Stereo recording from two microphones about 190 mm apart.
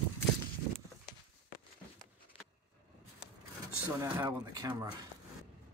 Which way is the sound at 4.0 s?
20° right (ahead or behind).